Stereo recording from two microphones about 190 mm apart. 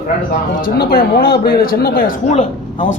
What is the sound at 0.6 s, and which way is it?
A man's voice, 50° left (ahead or behind).